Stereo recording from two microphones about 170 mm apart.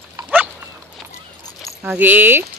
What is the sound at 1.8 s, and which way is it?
Speech, 10° right (ahead or behind).